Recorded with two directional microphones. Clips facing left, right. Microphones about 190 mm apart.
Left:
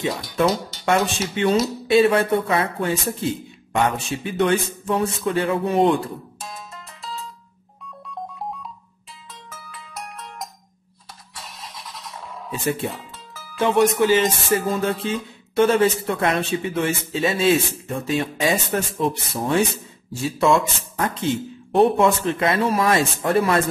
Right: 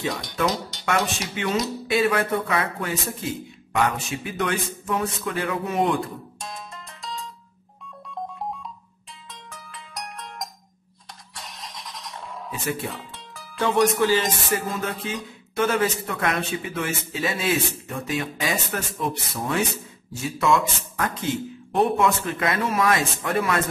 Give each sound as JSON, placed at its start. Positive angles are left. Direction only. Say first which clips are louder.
{"t": 1.1, "sound": "a man's voice", "louder": "left 6 dB", "side_deg": 30}
{"t": 6.4, "sound": "music", "louder": "even", "side_deg": 0}
{"t": 9.3, "sound": "music", "louder": "left 1 dB", "side_deg": 0}
{"t": 11.3, "sound": "vehicle", "louder": "left 1 dB", "side_deg": 5}
{"t": 12.6, "sound": "a man's voice", "louder": "left 5 dB", "side_deg": 25}
{"t": 12.9, "sound": "music", "louder": "left 1 dB", "side_deg": 0}
{"t": 13.6, "sound": "music", "louder": "left 3 dB", "side_deg": 20}
{"t": 13.9, "sound": "a man's voice", "louder": "left 4 dB", "side_deg": 20}
{"t": 14.7, "sound": "a man's voice", "louder": "left 6 dB", "side_deg": 30}